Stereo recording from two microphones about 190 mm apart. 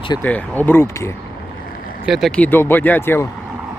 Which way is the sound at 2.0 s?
Centre (ahead or behind).